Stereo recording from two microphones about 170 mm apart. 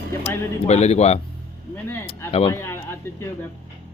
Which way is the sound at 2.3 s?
35° left (ahead or behind).